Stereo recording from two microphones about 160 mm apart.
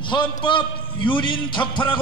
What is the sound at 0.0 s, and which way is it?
A man's voice, 30° left (ahead or behind).